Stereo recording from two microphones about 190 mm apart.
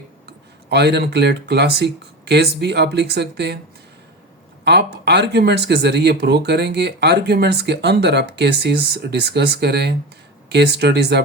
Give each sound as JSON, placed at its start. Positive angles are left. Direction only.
{"t": 0.3, "sound": "speech", "side_deg": -60}
{"t": 4.6, "sound": "speech", "side_deg": -60}